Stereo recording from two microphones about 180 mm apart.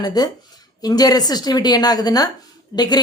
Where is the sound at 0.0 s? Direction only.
20° left (ahead or behind).